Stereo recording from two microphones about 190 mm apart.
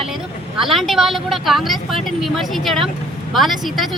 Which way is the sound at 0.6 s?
Centre (ahead or behind).